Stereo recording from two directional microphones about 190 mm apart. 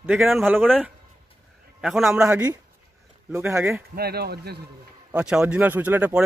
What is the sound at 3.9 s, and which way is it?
Speech, 55° right (ahead or behind).